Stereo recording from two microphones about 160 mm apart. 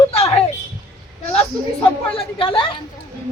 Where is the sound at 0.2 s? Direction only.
40° left (ahead or behind).